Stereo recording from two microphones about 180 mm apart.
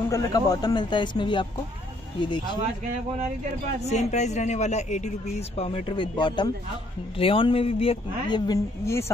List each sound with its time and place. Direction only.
0.1 s speech: 20° left (ahead or behind)
3.9 s speech: 40° left (ahead or behind); by 9.0 s 20° left (ahead or behind)